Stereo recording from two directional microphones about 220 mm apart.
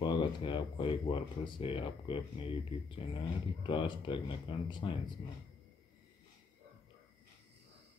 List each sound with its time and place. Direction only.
0.0 s speech: 20° left (ahead or behind)